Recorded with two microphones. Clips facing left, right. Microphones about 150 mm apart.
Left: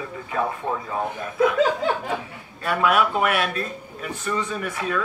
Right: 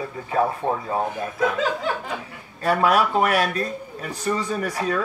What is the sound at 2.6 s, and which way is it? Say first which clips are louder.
Speech: right 2 dB; 40° right (ahead or behind).